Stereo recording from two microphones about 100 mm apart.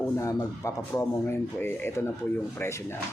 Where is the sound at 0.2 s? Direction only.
35° left (ahead or behind).